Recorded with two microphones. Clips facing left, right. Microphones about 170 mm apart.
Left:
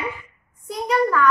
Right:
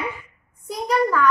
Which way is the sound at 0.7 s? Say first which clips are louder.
Even; centre (ahead or behind).